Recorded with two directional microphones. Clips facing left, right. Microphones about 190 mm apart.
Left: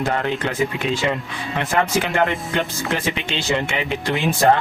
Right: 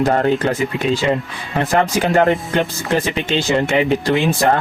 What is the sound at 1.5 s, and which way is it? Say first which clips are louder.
Speech: right 4 dB; 40° right (ahead or behind).